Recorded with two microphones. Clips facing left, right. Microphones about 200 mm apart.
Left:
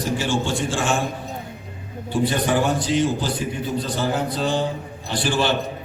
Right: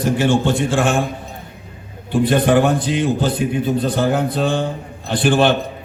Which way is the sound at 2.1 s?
55° right (ahead or behind).